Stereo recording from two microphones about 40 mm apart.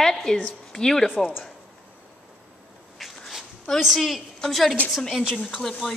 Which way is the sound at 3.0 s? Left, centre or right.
Centre.